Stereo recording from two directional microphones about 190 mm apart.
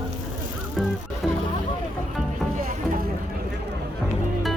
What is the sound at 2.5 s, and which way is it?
Music, 40° right (ahead or behind).